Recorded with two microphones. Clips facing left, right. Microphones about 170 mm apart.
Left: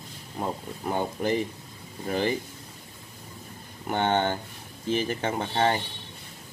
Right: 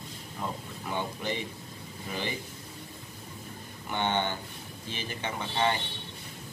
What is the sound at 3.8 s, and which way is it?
Speech, 45° left (ahead or behind).